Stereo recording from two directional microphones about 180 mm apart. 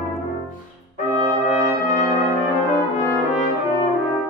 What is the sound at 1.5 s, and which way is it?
Brass instrument, 20° right (ahead or behind).